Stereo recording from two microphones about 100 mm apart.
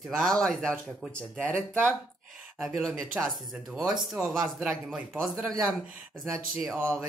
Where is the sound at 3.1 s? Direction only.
10° right (ahead or behind).